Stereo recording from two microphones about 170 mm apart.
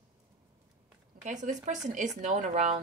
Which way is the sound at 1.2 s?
45° right (ahead or behind).